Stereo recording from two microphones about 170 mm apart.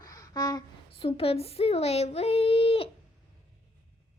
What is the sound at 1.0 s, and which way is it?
Speech, 35° left (ahead or behind).